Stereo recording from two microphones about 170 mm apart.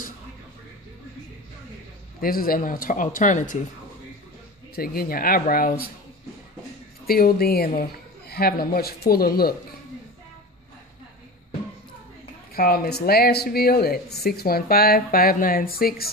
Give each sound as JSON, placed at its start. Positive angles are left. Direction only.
{"t": 2.1, "sound": "speech", "side_deg": 60}
{"t": 4.7, "sound": "speech", "side_deg": 60}
{"t": 7.1, "sound": "speech", "side_deg": 60}
{"t": 12.5, "sound": "speech", "side_deg": 65}